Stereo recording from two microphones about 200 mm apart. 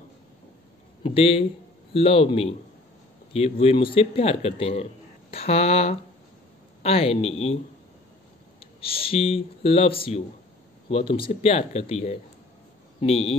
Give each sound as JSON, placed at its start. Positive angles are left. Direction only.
{"t": 1.0, "sound": "speech", "side_deg": 30}
{"t": 8.5, "sound": "speech", "side_deg": 25}